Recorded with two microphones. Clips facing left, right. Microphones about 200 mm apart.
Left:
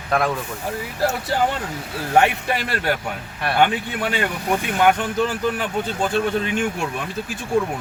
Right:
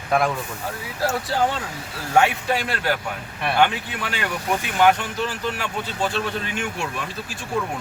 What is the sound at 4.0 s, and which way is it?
A man's voice, 50° left (ahead or behind).